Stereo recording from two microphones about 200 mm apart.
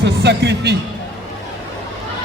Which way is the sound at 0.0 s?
60° right (ahead or behind).